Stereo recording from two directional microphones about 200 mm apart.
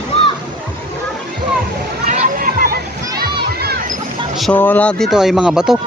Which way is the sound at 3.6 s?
50° right (ahead or behind).